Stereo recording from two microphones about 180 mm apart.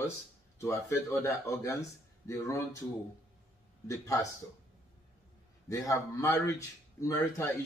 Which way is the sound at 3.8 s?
15° left (ahead or behind).